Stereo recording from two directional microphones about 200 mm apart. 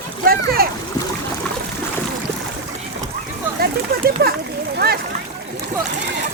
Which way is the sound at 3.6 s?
45° right (ahead or behind).